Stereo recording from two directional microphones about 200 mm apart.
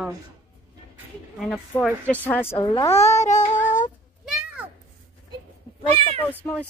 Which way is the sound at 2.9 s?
35° left (ahead or behind).